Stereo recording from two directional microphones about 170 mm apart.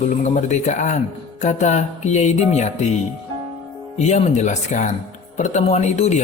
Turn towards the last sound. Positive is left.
turn(degrees=40)  # may be behind; listen again after turning